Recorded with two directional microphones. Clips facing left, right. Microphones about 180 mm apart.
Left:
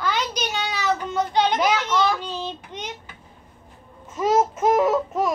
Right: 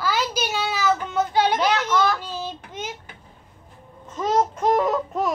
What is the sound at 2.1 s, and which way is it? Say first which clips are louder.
Child singing: left 1 dB; 10° right (ahead or behind).